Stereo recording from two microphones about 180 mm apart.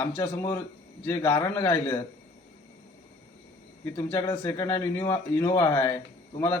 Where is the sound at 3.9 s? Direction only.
15° left (ahead or behind).